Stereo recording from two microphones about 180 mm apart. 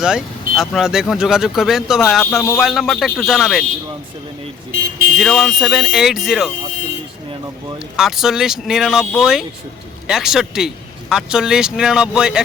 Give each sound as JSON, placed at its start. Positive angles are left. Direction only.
{"t": 0.0, "sound": "speech", "side_deg": -5}
{"t": 5.1, "sound": "speech", "side_deg": 0}
{"t": 7.9, "sound": "speech", "side_deg": 0}
{"t": 10.1, "sound": "speech", "side_deg": 0}